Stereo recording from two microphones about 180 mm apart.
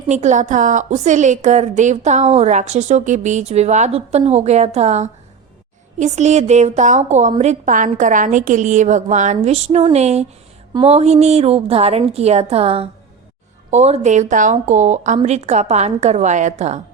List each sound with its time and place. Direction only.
0.1 s a woman's voice: 40° right (ahead or behind)